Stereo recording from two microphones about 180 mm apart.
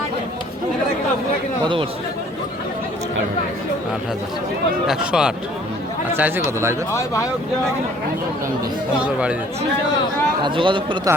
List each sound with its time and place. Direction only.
1.6 s speech: 30° right (ahead or behind)
4.9 s speech: 5° right (ahead or behind)
6.9 s speech: 15° left (ahead or behind)
10.4 s speech: 25° right (ahead or behind)